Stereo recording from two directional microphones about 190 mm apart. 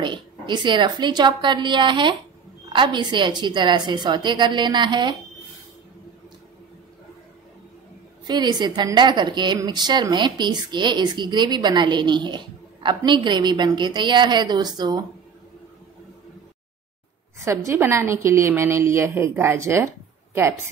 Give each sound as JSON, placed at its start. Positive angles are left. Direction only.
{"t": 0.0, "sound": "a woman's voice", "side_deg": -25}
{"t": 8.3, "sound": "a woman's voice", "side_deg": -20}
{"t": 17.6, "sound": "a woman's voice", "side_deg": -15}